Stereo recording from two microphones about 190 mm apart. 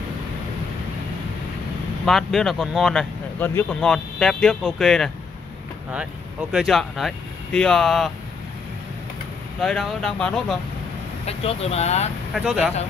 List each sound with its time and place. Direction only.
2.0 s speech: centre (ahead or behind)
6.5 s speech: centre (ahead or behind)
9.6 s speech: 5° left (ahead or behind)
11.2 s speech: 35° left (ahead or behind)
12.3 s speech: centre (ahead or behind)